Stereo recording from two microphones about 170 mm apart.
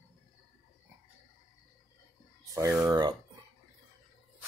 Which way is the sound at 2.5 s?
20° right (ahead or behind).